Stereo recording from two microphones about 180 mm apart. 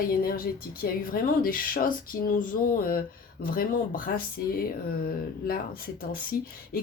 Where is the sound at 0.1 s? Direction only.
55° left (ahead or behind).